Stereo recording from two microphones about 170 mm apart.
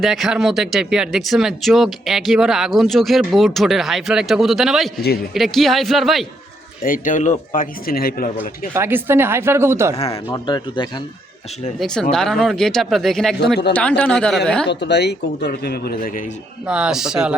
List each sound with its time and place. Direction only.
0.0 s speech: centre (ahead or behind)
6.8 s speech: 50° left (ahead or behind)
8.7 s speech: 15° right (ahead or behind)
10.1 s speech: 20° left (ahead or behind)
12.1 s a man's voice: 5° left (ahead or behind)
14.7 s speech: 80° left; by 16.2 s 55° left (ahead or behind)
16.6 s speech: 5° right (ahead or behind)